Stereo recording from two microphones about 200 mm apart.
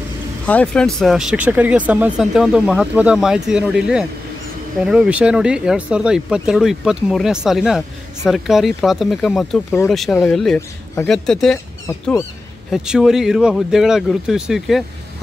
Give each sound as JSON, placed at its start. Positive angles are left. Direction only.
{"t": 0.5, "sound": "speech", "side_deg": 5}
{"t": 11.8, "sound": "speech", "side_deg": 15}
{"t": 12.7, "sound": "speech", "side_deg": -5}